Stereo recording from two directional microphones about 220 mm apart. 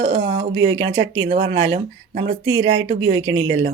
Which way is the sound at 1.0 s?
60° right (ahead or behind).